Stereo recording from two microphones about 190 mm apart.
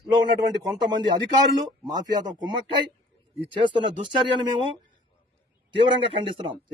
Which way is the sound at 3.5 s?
25° right (ahead or behind).